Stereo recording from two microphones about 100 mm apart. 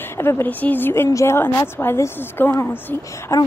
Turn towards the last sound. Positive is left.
turn(degrees=25)  # may be behind; listen again after turning